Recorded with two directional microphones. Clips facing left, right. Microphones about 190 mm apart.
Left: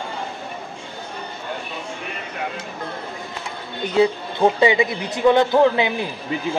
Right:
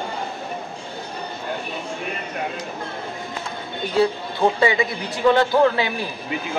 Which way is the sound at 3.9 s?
20° left (ahead or behind).